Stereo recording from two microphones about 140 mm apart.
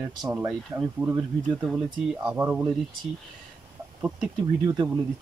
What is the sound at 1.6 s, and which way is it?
Speech, 5° right (ahead or behind).